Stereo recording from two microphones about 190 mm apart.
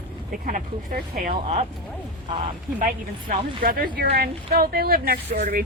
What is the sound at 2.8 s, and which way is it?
Speech, 45° right (ahead or behind).